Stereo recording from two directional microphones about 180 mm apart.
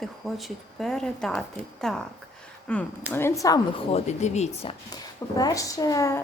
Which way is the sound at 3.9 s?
40° left (ahead or behind).